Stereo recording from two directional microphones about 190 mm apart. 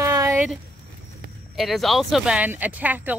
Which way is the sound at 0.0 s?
15° right (ahead or behind).